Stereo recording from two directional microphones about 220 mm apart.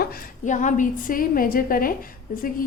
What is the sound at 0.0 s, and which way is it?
A woman's voice, 35° left (ahead or behind).